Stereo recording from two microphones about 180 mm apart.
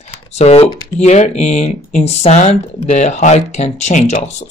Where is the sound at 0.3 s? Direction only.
35° left (ahead or behind).